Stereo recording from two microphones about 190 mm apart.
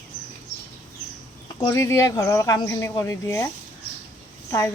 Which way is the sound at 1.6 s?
15° left (ahead or behind).